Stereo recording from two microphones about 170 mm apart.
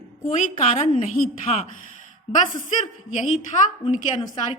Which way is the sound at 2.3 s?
40° left (ahead or behind).